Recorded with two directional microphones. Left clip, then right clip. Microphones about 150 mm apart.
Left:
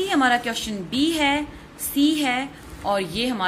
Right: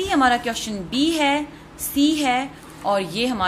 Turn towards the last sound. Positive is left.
turn(degrees=-25)  # may be behind; listen again after turning